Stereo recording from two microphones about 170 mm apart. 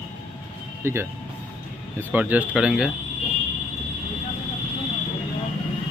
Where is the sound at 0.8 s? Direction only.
15° right (ahead or behind).